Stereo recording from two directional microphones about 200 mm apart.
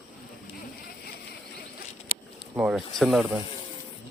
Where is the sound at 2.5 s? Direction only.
Centre (ahead or behind).